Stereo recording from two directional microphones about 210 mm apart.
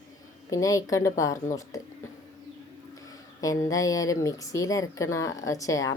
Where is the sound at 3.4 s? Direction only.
15° left (ahead or behind).